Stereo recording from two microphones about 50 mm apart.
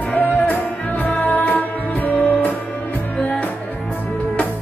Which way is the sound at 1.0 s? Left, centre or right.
Left.